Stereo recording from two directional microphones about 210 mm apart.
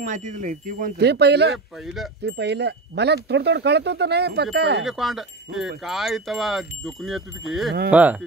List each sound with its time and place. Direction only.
0.0 s speech: 35° right (ahead or behind); by 4.8 s 50° right (ahead or behind)
4.8 s wind chime: centre (ahead or behind)
7.9 s speech: 5° right (ahead or behind)